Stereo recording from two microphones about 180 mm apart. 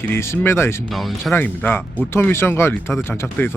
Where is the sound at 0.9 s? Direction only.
Centre (ahead or behind).